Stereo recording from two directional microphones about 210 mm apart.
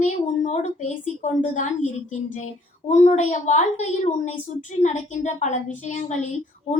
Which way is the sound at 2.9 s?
35° left (ahead or behind).